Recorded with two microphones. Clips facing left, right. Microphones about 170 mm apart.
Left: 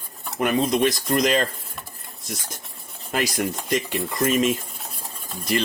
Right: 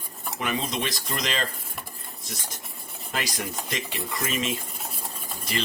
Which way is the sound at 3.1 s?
50° left (ahead or behind).